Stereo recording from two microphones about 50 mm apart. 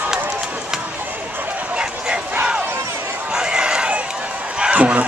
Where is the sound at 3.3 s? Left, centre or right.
Centre.